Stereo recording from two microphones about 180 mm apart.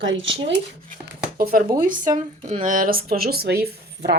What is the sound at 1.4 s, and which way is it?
Speech, 55° right (ahead or behind).